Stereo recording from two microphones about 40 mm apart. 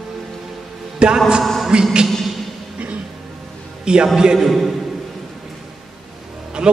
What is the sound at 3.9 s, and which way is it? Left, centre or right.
Speech, right.